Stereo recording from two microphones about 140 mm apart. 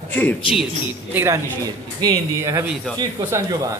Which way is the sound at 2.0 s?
25° right (ahead or behind).